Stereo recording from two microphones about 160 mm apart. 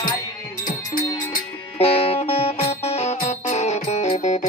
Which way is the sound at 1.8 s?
35° left (ahead or behind).